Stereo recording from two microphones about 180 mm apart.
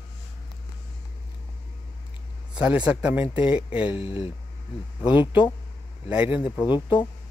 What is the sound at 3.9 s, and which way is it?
Speech, 30° left (ahead or behind).